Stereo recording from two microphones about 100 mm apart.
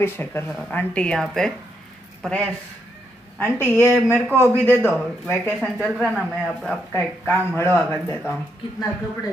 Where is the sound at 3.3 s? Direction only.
25° left (ahead or behind).